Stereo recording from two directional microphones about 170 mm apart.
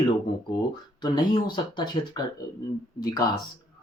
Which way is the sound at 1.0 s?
25° left (ahead or behind).